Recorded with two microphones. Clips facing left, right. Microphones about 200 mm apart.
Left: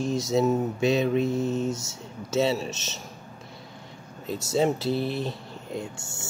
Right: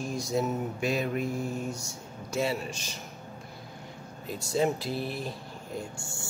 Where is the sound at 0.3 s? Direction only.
25° left (ahead or behind).